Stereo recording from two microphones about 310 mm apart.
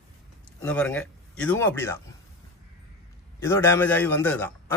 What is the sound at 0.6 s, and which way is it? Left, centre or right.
Speech, centre.